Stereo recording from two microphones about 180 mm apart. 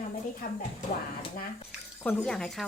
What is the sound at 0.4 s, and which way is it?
Speech, 50° left (ahead or behind).